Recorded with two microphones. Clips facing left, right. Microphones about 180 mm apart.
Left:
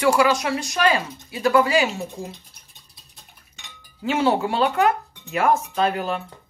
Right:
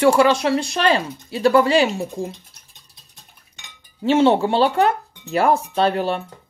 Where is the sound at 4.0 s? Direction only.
25° right (ahead or behind).